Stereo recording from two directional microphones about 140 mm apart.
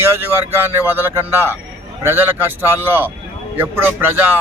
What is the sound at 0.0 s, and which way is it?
Speech, 20° right (ahead or behind).